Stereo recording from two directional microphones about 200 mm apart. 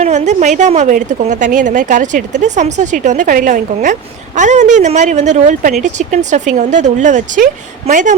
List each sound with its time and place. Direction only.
0.0 s a woman's voice: 35° right (ahead or behind)